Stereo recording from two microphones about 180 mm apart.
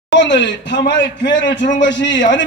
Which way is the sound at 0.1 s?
70° left (ahead or behind).